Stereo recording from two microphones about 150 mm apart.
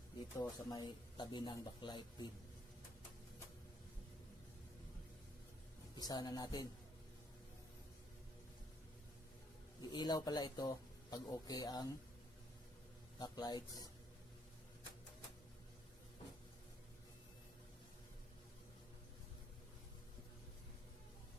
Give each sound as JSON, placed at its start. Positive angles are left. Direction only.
{"t": 0.3, "sound": "speech", "side_deg": 25}
{"t": 6.0, "sound": "speech", "side_deg": 25}
{"t": 9.9, "sound": "speech", "side_deg": 30}
{"t": 13.1, "sound": "speech", "side_deg": 25}